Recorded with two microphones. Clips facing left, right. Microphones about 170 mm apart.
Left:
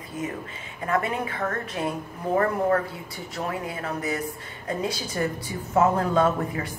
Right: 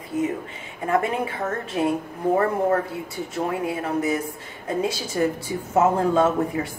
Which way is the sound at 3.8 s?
25° right (ahead or behind).